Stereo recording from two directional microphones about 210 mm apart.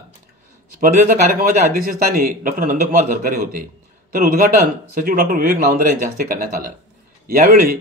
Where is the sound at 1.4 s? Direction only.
40° right (ahead or behind).